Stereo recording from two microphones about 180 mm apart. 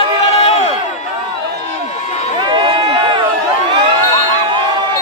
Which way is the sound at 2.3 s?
25° right (ahead or behind).